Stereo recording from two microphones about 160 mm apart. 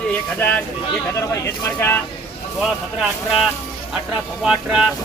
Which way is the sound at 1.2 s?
15° left (ahead or behind).